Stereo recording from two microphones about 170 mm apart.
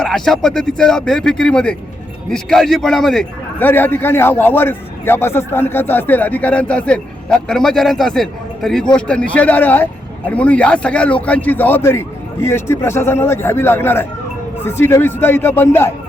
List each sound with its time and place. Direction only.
0.0 s a man's voice: centre (ahead or behind)